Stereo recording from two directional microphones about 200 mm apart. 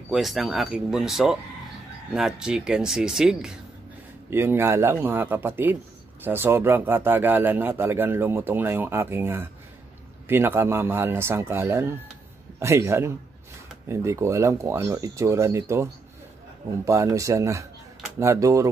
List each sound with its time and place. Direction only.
0.1 s speech: centre (ahead or behind)